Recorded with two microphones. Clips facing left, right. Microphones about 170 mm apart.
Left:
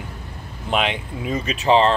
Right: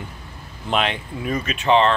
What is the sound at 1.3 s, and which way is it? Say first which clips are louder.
Speech: left 1 dB; 35° left (ahead or behind).